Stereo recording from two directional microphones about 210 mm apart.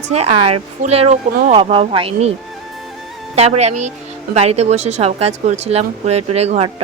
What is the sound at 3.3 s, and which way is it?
Speech, 30° right (ahead or behind).